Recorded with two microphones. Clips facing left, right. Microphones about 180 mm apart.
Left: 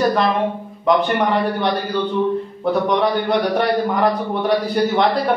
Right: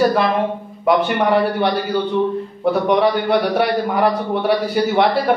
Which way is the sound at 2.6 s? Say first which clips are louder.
Right 3 dB; 10° right (ahead or behind).